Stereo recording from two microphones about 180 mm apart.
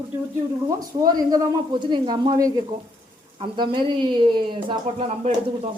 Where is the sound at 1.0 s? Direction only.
20° right (ahead or behind).